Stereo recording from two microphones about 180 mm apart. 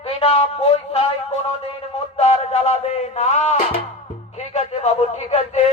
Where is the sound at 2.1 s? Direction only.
35° left (ahead or behind).